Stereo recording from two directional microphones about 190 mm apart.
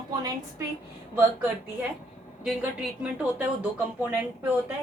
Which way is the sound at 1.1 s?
10° right (ahead or behind).